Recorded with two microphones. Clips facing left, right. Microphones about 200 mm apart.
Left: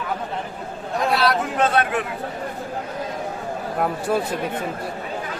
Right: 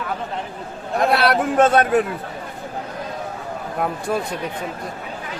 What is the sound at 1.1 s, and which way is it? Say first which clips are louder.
Speech: right 4 dB; 55° right (ahead or behind).